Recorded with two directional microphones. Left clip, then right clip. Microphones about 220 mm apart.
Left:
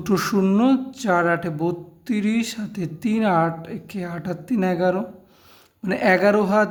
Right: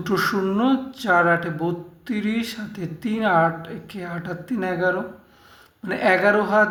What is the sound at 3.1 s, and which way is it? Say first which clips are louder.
Speech: right 2 dB; 40° left (ahead or behind).